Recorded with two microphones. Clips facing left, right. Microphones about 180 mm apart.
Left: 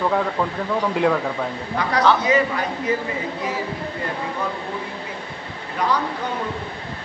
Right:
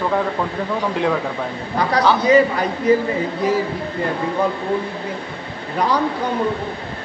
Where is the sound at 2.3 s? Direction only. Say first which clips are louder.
Right 11 dB; 35° right (ahead or behind).